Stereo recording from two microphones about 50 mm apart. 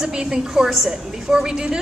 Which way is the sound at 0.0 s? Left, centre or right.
Centre.